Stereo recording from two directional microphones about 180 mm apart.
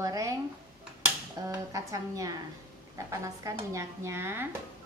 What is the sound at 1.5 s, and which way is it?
Speech, 20° right (ahead or behind).